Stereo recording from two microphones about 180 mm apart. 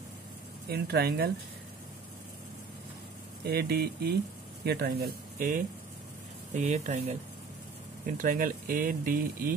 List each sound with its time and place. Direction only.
0.7 s speech: 60° right (ahead or behind)
3.4 s speech: 60° right (ahead or behind)
6.5 s speech: 40° right (ahead or behind)
8.2 s speech: 50° right (ahead or behind)